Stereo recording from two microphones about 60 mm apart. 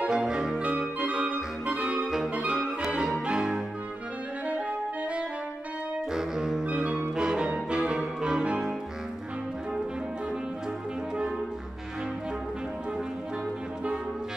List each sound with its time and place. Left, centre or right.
0.1 s music: centre
0.6 s clarinet: right
2.3 s music: right
2.8 s music: centre
6.1 s saxophone: centre
6.6 s music: right